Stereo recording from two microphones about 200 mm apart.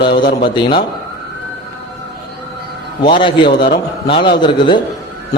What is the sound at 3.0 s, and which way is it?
A man's voice, 25° left (ahead or behind).